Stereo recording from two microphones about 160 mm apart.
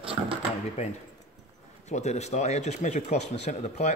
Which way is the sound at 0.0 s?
35° right (ahead or behind).